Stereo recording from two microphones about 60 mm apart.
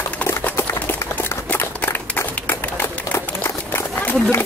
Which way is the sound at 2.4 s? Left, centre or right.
Left.